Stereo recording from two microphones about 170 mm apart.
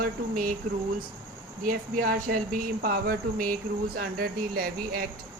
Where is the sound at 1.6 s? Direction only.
55° right (ahead or behind).